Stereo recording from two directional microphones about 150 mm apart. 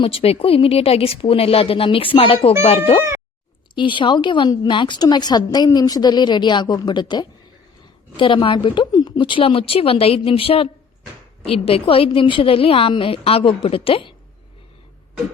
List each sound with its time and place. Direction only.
0.0 s a woman's voice: 40° left (ahead or behind)